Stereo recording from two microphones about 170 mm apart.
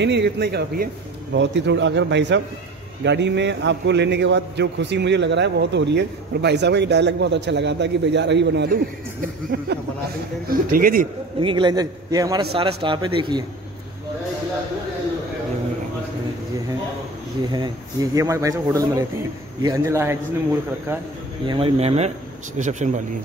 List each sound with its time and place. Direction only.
0.0 s speech: 85° right
1.3 s a man's voice: 90° right; by 9.7 s 75° right (ahead or behind)
10.5 s a man's voice: 55° right (ahead or behind)
11.3 s a man's voice: 30° right (ahead or behind)
18.1 s a man's voice: 20° right (ahead or behind)
21.5 s speech: 35° right (ahead or behind)